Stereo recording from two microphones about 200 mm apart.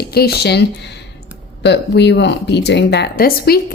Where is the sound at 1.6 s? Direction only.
60° left (ahead or behind).